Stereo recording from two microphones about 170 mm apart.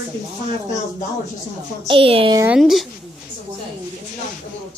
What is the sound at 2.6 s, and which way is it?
Speech, centre (ahead or behind).